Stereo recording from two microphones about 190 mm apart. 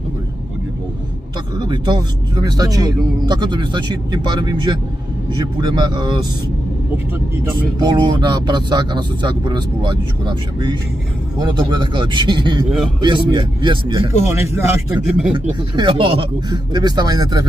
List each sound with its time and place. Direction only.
1.6 s a man's voice: 20° right (ahead or behind)
7.8 s a man's voice: 25° right (ahead or behind)
15.0 s speech: 5° right (ahead or behind)
15.7 s a man's voice: 20° right (ahead or behind)